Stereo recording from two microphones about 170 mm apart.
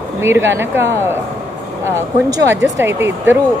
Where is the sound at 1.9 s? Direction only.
15° right (ahead or behind).